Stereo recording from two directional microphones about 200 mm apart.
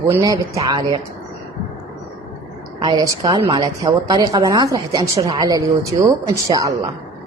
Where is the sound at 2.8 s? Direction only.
20° right (ahead or behind).